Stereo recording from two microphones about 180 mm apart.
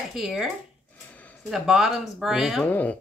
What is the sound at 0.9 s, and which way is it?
Speech, 10° left (ahead or behind).